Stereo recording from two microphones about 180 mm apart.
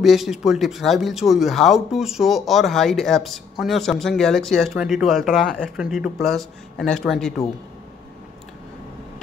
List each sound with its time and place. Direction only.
0.0 s speech: centre (ahead or behind)